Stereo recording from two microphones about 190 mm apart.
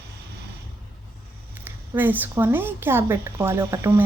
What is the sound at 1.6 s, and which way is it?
Speech, 10° right (ahead or behind).